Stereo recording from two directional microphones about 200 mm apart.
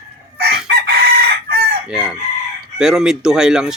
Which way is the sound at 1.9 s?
5° right (ahead or behind).